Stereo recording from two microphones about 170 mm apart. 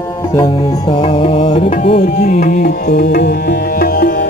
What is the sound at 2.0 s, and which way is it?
Music, 60° left (ahead or behind).